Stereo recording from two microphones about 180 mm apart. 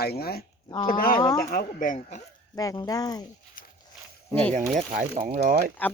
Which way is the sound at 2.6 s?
20° left (ahead or behind).